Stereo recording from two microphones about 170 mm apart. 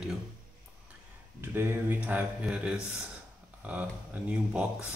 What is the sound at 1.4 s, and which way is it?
Speech, 10° right (ahead or behind).